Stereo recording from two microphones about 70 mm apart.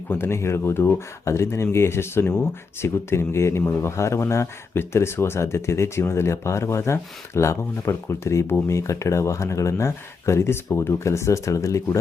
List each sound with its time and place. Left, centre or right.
0.1 s speech: left
2.2 s speech: centre
2.8 s speech: left